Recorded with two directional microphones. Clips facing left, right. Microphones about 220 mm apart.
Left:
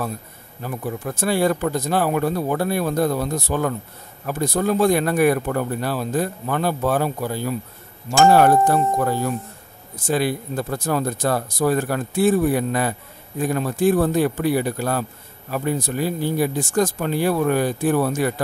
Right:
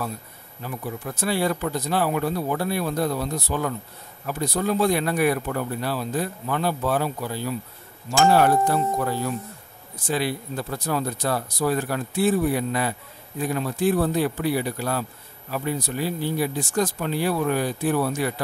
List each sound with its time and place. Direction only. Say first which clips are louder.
0.6 s speech: left 4 dB; 45° left (ahead or behind)